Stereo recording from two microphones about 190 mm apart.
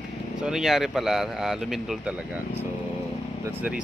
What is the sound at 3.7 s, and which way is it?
Speech, 5° right (ahead or behind).